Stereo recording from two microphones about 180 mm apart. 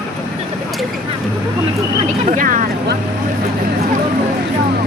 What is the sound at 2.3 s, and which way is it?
Vehicle, 45° right (ahead or behind).